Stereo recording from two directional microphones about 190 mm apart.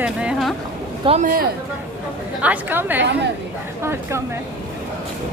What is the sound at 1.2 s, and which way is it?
Speech, 50° right (ahead or behind).